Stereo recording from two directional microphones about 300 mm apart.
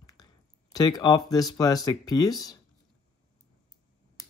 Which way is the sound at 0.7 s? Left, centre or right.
Centre.